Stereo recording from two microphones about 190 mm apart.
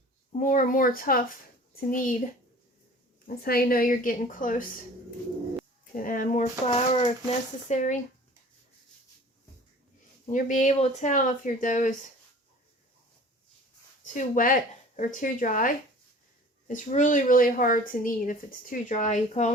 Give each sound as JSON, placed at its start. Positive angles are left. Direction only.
{"t": 0.3, "sound": "a woman's voice", "side_deg": 45}
{"t": 3.2, "sound": "a woman's voice", "side_deg": 55}
{"t": 6.0, "sound": "a woman's voice", "side_deg": 45}
{"t": 10.2, "sound": "speech", "side_deg": 40}
{"t": 14.0, "sound": "a woman's voice", "side_deg": 40}